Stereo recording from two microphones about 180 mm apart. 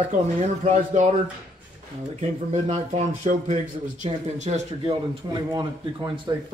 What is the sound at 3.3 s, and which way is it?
Speech, 40° right (ahead or behind).